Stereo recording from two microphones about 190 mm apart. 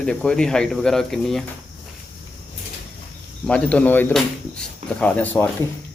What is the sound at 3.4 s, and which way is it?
Speech, 5° left (ahead or behind).